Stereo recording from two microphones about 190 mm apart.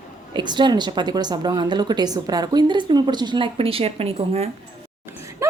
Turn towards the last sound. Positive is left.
turn(degrees=-30)  # may be behind; listen again after turning